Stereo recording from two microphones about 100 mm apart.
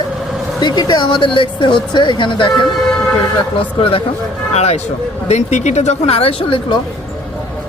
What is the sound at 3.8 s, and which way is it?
Speech, 65° left (ahead or behind).